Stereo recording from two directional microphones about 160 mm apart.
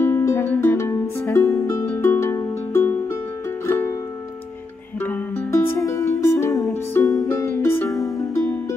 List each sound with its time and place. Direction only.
0.0 s music: 15° left (ahead or behind)
5.0 s music: 10° left (ahead or behind)